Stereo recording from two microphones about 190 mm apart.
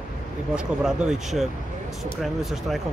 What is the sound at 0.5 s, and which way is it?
Speech, 5° right (ahead or behind).